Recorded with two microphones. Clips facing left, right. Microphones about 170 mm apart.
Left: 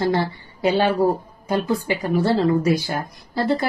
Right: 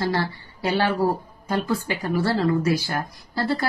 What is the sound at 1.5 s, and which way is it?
A woman's voice, 15° left (ahead or behind).